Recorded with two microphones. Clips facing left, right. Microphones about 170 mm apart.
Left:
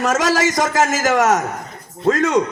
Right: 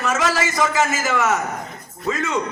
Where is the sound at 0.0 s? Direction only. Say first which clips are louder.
Left 4 dB; 45° left (ahead or behind).